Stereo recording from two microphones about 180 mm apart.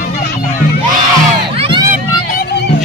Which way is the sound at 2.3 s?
60° left (ahead or behind).